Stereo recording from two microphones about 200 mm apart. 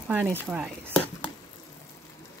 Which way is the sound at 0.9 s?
5° left (ahead or behind).